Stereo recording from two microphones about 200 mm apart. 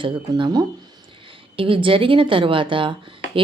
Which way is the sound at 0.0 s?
25° right (ahead or behind).